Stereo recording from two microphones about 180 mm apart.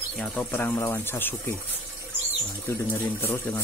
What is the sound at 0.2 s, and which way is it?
Speech, 10° left (ahead or behind).